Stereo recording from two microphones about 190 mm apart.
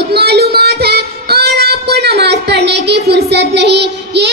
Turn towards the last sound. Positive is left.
turn(degrees=-60)  # may be behind; listen again after turning